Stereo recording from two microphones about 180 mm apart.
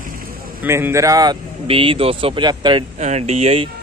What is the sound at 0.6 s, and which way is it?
Speech, 15° right (ahead or behind).